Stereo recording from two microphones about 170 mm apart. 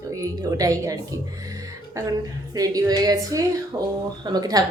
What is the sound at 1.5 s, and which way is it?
Music, 20° right (ahead or behind).